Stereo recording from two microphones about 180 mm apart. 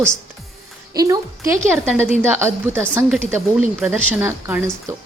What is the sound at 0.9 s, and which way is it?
A woman's voice, 20° right (ahead or behind).